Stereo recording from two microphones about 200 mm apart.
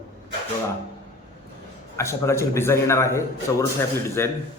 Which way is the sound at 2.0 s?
15° left (ahead or behind).